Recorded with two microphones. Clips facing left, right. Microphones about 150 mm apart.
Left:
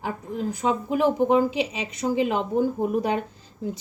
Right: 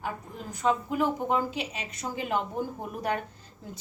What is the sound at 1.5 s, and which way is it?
Speech, 90° left.